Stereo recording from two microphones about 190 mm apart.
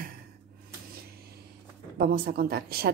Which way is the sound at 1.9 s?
55° right (ahead or behind).